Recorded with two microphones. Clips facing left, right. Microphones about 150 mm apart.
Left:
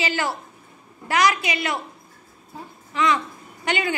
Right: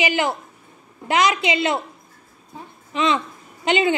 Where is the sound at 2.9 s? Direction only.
25° right (ahead or behind).